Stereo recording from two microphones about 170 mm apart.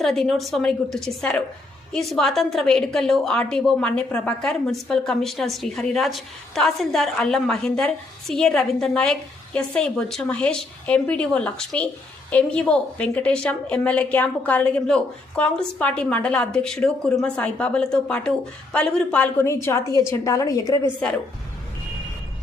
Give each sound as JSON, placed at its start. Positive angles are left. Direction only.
{"t": 0.0, "sound": "a woman's voice", "side_deg": 0}